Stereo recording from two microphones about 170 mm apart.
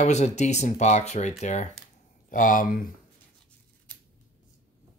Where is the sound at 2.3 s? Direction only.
50° left (ahead or behind).